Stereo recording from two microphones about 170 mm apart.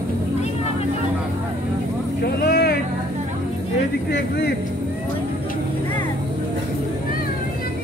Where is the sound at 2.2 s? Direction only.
70° left (ahead or behind).